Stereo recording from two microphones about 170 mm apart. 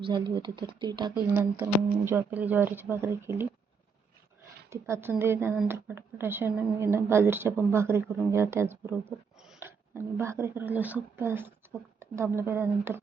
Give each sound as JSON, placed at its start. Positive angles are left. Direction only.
{"t": 0.0, "sound": "speech", "side_deg": -30}
{"t": 1.1, "sound": "speech", "side_deg": -10}
{"t": 4.7, "sound": "speech", "side_deg": -15}